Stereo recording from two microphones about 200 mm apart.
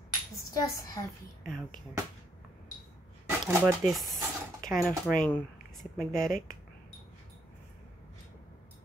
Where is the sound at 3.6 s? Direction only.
Centre (ahead or behind).